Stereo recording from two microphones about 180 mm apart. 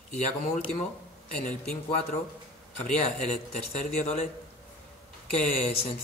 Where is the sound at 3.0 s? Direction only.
40° left (ahead or behind).